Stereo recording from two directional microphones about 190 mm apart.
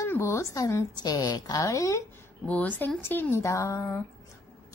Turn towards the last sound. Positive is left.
turn(degrees=15)  # may be behind; listen again after turning